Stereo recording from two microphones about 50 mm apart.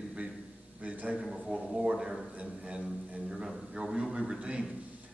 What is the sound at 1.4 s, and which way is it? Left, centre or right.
A man's voice, centre.